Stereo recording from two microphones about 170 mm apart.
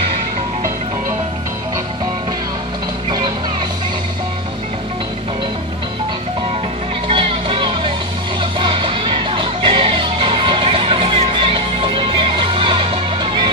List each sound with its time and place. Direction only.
7.1 s music: 30° right (ahead or behind)